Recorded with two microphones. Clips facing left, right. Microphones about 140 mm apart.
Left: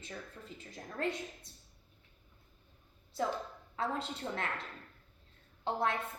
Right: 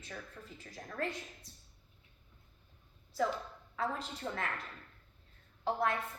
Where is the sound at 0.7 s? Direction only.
20° left (ahead or behind).